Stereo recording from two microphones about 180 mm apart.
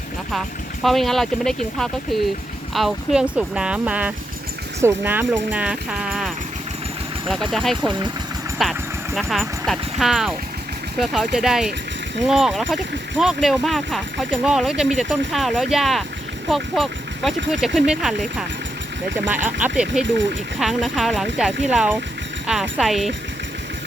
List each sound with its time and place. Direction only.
0.3 s speech: centre (ahead or behind)
7.9 s speech: 25° right (ahead or behind)
8.6 s speech: centre (ahead or behind)